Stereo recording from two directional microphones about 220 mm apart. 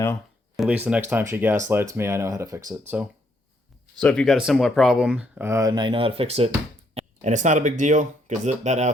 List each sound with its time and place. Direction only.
0.0 s speech: 5° left (ahead or behind); by 2.6 s 15° right (ahead or behind)
4.0 s speech: 5° left (ahead or behind); by 8.9 s 30° right (ahead or behind)